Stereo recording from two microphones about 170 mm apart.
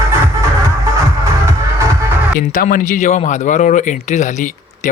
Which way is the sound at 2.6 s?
50° left (ahead or behind).